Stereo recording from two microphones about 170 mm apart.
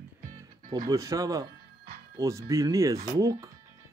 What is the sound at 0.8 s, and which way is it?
Speech, 20° right (ahead or behind).